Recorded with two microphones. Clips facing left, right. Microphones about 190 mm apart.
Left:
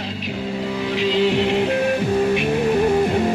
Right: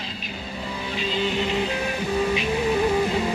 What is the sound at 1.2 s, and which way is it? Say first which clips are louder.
Music: left 6 dB; 75° left (ahead or behind).